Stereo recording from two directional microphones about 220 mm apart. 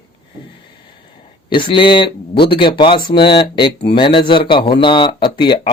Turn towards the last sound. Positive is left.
turn(degrees=20)  # may be behind; listen again after turning